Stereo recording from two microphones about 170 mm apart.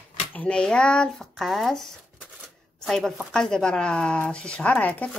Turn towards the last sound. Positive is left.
turn(degrees=10)  # may be behind; listen again after turning